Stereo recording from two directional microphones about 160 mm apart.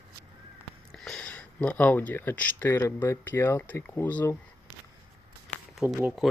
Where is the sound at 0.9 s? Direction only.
5° left (ahead or behind).